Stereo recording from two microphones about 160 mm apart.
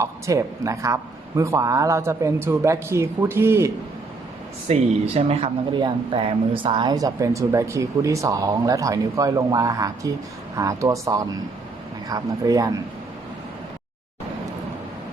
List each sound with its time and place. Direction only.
0.0 s speech: 20° right (ahead or behind)
4.7 s speech: 40° right (ahead or behind); by 12.7 s 20° right (ahead or behind)